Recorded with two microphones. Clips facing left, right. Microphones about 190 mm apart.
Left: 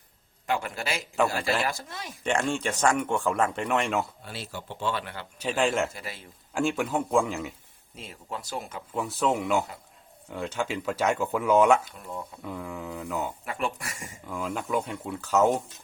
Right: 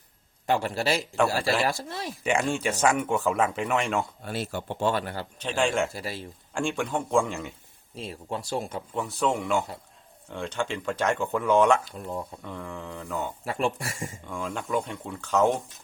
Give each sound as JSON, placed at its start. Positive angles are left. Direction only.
{"t": 0.4, "sound": "a man's voice", "side_deg": -35}
{"t": 1.1, "sound": "speech", "side_deg": 0}
{"t": 1.6, "sound": "a man's voice", "side_deg": -35}
{"t": 2.2, "sound": "speech", "side_deg": -5}
{"t": 4.2, "sound": "speech", "side_deg": -50}
{"t": 5.4, "sound": "speech", "side_deg": 5}
{"t": 5.9, "sound": "a man's voice", "side_deg": -35}
{"t": 6.5, "sound": "speech", "side_deg": 5}
{"t": 7.9, "sound": "speech", "side_deg": -30}
{"t": 8.9, "sound": "speech", "side_deg": 0}
{"t": 11.9, "sound": "a man's voice", "side_deg": -30}
{"t": 12.4, "sound": "speech", "side_deg": 5}
{"t": 13.4, "sound": "speech", "side_deg": -30}
{"t": 14.3, "sound": "speech", "side_deg": 5}